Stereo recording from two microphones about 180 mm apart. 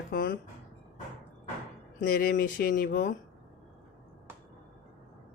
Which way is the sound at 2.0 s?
55° left (ahead or behind).